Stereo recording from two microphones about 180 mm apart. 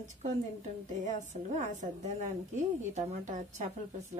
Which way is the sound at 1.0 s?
40° right (ahead or behind).